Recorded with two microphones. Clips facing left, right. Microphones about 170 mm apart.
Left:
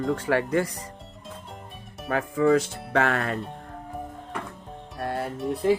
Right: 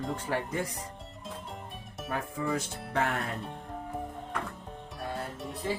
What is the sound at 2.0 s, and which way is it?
Speech, 90° left.